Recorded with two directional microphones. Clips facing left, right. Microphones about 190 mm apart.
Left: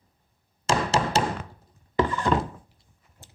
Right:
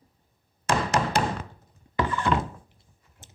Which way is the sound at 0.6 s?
25° left (ahead or behind).